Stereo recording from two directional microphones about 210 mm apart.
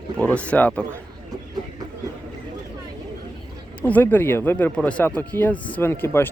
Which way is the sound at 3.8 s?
5° left (ahead or behind).